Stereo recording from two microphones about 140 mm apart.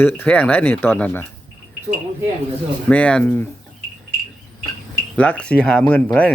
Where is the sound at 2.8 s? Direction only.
10° left (ahead or behind).